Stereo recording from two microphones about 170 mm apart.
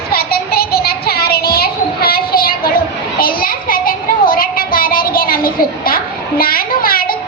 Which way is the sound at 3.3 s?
60° left (ahead or behind).